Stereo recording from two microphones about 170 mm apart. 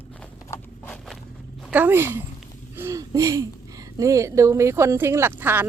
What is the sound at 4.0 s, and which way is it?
Speech, 20° right (ahead or behind).